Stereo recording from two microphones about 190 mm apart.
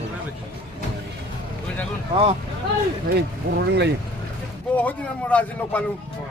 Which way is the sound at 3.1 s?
60° right (ahead or behind).